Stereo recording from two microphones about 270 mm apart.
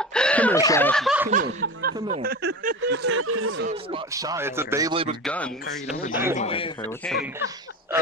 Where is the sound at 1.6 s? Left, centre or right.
Right.